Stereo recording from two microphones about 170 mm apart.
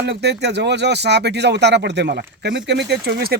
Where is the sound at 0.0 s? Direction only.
75° right (ahead or behind).